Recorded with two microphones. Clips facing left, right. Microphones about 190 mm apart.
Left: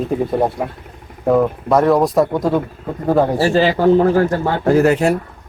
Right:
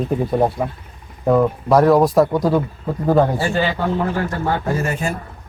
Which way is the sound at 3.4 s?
35° left (ahead or behind).